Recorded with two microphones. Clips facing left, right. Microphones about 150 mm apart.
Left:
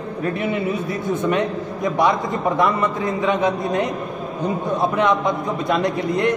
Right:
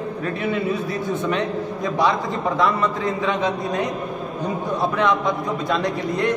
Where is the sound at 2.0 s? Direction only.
15° left (ahead or behind).